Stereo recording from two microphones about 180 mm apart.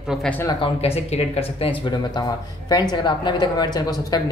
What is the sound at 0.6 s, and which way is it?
Speech, 35° left (ahead or behind).